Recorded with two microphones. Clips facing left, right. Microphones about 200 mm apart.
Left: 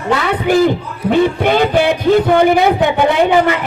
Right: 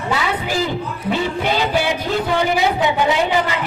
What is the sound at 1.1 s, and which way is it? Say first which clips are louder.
A man's voice: left 8 dB; 55° left (ahead or behind).